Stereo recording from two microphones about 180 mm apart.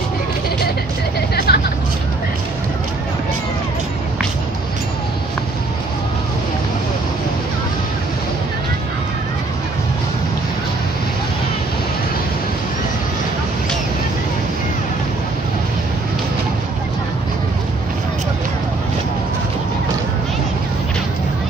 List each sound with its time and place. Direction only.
1.3 s hubbub: 60° left (ahead or behind)